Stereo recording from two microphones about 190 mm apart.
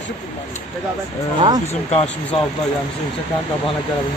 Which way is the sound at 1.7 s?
35° left (ahead or behind).